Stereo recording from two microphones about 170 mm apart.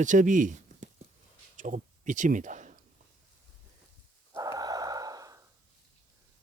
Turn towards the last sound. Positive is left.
turn(degrees=-20)  # may be behind; listen again after turning